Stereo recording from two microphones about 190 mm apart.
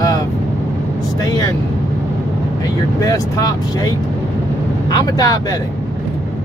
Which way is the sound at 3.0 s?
20° left (ahead or behind).